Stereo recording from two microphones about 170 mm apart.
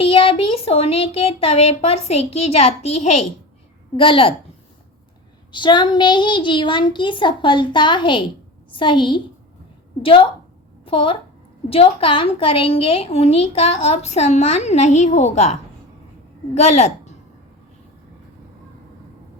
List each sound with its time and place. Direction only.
0.0 s a woman's voice: 30° left (ahead or behind)
5.5 s a child's voice: 25° left (ahead or behind)